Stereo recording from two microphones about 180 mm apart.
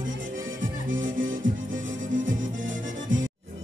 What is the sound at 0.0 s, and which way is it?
Music, 90° right.